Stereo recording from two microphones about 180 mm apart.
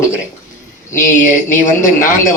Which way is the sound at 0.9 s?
45° left (ahead or behind).